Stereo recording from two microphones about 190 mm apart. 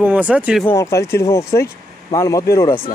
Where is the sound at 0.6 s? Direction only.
15° left (ahead or behind).